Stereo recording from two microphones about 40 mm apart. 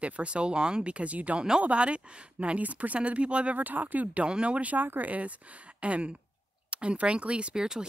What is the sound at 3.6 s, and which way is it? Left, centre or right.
Speech, right.